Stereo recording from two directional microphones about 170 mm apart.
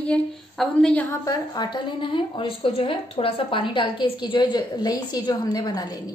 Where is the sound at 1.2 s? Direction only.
25° left (ahead or behind).